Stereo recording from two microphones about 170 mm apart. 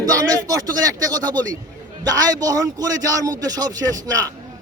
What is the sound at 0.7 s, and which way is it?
A man's voice, 20° right (ahead or behind).